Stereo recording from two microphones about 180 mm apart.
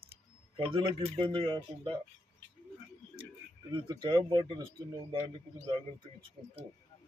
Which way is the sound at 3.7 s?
25° right (ahead or behind).